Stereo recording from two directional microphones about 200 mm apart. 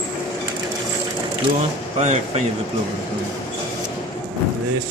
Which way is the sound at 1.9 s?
35° right (ahead or behind).